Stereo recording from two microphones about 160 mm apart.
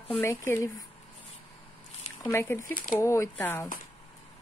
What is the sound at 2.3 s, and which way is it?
Speech, 15° left (ahead or behind).